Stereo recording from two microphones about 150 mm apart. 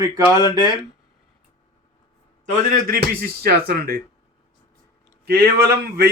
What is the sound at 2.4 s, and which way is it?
A man's voice, 60° right (ahead or behind).